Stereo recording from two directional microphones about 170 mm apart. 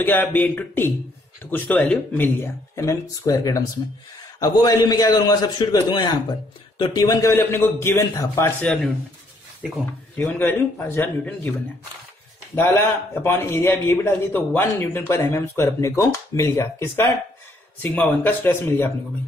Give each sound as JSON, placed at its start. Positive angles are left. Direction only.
{"t": 0.0, "sound": "a man's voice", "side_deg": 10}
{"t": 10.1, "sound": "a man's voice", "side_deg": 10}
{"t": 12.5, "sound": "a man's voice", "side_deg": 15}